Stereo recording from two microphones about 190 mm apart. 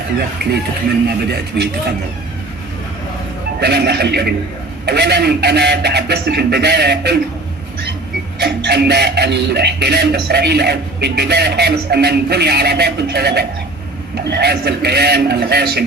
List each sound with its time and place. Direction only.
1.0 s speech: 60° right (ahead or behind)
3.6 s speech: 60° right (ahead or behind)
8.4 s speech: 60° right (ahead or behind)